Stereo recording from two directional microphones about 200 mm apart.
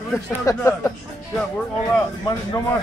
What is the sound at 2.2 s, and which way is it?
Speech, 15° left (ahead or behind).